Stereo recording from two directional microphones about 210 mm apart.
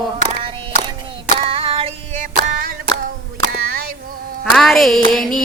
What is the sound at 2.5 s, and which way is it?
Music, 45° right (ahead or behind).